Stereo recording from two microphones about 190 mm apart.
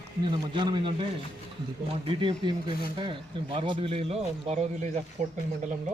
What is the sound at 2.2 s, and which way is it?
Speech, 25° right (ahead or behind).